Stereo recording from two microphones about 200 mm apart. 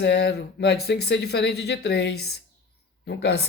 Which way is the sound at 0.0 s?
55° left (ahead or behind).